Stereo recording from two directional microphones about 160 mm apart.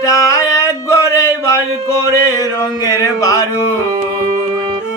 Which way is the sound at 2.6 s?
20° left (ahead or behind).